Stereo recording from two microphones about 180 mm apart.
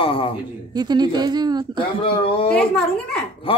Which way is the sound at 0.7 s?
25° right (ahead or behind).